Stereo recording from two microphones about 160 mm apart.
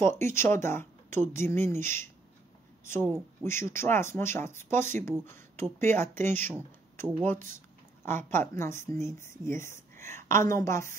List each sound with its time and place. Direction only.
0.0 s a woman's voice: 15° left (ahead or behind)